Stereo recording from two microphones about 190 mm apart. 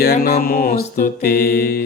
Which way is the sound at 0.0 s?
55° left (ahead or behind).